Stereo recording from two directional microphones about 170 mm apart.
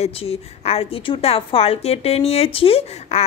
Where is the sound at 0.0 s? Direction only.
35° left (ahead or behind).